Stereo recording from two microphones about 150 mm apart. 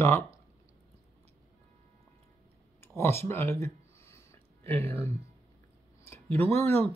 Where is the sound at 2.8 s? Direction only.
15° left (ahead or behind).